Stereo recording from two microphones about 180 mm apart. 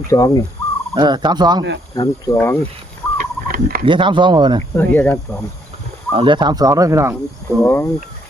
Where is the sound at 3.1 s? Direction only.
55° right (ahead or behind).